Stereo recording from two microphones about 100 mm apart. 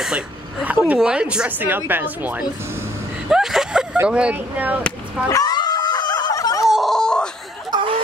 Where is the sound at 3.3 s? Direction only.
5° right (ahead or behind).